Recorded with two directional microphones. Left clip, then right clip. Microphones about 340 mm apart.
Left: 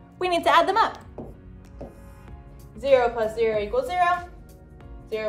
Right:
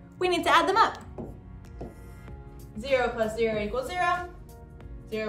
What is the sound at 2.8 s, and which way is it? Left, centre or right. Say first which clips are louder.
A woman's voice: left 6 dB; centre.